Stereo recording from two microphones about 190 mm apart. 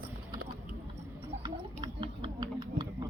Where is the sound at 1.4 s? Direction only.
25° right (ahead or behind).